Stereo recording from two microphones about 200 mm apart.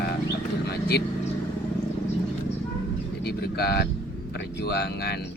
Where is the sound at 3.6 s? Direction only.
55° left (ahead or behind).